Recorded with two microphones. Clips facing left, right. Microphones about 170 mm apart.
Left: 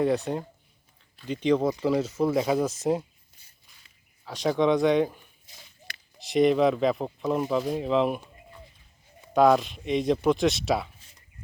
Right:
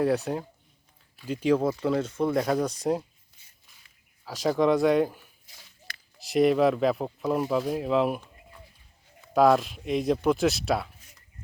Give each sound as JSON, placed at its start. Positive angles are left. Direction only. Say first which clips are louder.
{"t": 0.0, "sound": "speech", "louder": "even", "side_deg": 0}
{"t": 4.3, "sound": "speech", "louder": "even", "side_deg": 0}
{"t": 5.5, "sound": "walk", "louder": "left 2 dB", "side_deg": 20}
{"t": 6.1, "sound": "speech", "louder": "even", "side_deg": 0}